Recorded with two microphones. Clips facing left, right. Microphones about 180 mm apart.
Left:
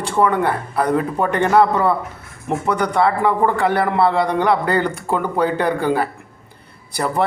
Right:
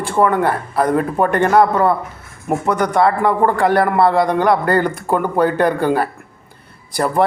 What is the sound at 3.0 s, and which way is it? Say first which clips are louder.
A man's voice: right 1 dB; 55° right (ahead or behind).